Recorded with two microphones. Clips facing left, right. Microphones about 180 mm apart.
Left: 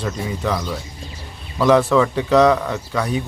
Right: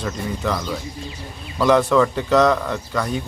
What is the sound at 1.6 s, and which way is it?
Speech, centre (ahead or behind).